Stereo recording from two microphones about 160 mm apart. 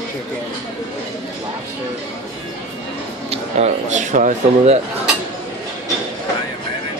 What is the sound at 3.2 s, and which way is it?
Speech, 45° right (ahead or behind).